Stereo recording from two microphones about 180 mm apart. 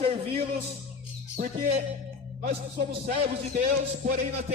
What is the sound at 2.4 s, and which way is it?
A man's voice, 55° right (ahead or behind).